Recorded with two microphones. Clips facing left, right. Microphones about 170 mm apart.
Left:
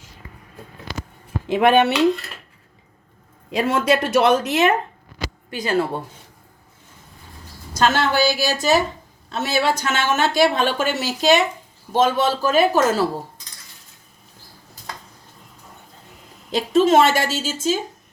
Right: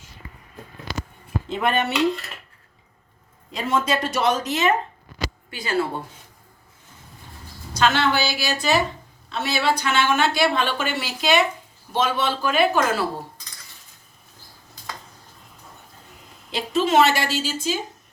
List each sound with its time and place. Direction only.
1.5 s speech: 70° left (ahead or behind)
3.5 s a woman's voice: 65° left (ahead or behind)
5.5 s a woman's voice: 45° left (ahead or behind)
7.7 s a woman's voice: 45° left (ahead or behind)
16.5 s a woman's voice: 45° left (ahead or behind)